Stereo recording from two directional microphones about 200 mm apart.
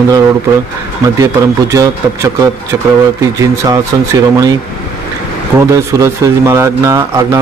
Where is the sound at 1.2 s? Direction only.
15° right (ahead or behind).